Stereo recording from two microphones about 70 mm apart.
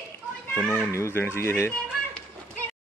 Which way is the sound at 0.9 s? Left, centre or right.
Left.